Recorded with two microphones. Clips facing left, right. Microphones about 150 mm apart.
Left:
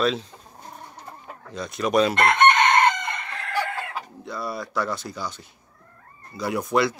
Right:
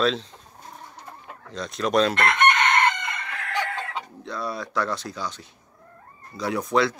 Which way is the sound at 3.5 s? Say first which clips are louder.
Left 1 dB; 10° left (ahead or behind).